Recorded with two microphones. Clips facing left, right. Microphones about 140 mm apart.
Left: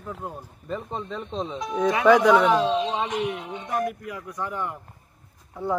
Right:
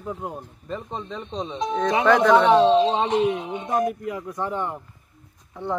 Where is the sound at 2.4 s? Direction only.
30° right (ahead or behind).